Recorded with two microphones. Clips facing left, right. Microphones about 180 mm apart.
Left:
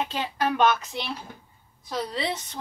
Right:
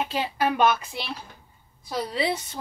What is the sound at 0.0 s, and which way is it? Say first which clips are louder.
A woman's voice: right 2 dB; 10° right (ahead or behind).